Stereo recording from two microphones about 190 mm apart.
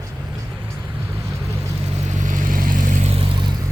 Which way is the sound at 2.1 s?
40° right (ahead or behind).